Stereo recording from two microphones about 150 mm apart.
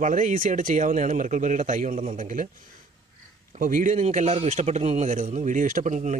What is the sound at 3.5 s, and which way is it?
A man's voice, 60° right (ahead or behind).